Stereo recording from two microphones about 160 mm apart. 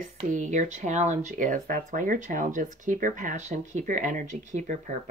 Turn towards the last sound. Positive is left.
turn(degrees=-50)  # may be behind; listen again after turning